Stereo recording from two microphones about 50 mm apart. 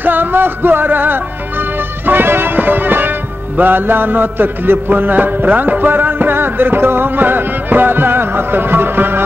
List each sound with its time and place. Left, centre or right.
0.0 s music: right